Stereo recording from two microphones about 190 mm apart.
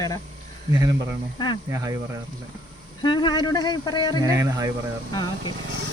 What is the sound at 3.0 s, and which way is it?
Speech, 25° left (ahead or behind).